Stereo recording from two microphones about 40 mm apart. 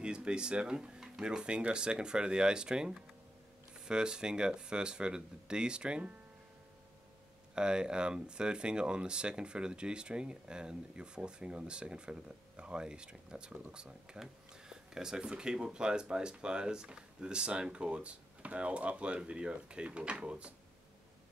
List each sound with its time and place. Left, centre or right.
0.0 s speech: right
7.5 s speech: right